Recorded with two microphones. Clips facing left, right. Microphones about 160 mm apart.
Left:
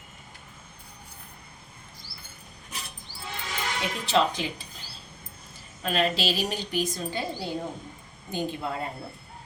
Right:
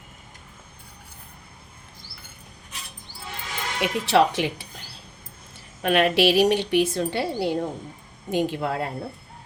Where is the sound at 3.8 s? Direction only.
75° right (ahead or behind).